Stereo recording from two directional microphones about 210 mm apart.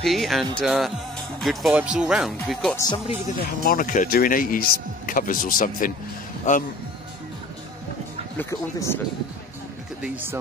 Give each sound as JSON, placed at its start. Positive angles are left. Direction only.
{"t": 0.0, "sound": "speech", "side_deg": 0}
{"t": 2.8, "sound": "speech", "side_deg": 20}
{"t": 3.6, "sound": "speech", "side_deg": 40}
{"t": 8.4, "sound": "speech", "side_deg": 15}
{"t": 10.0, "sound": "speech", "side_deg": -10}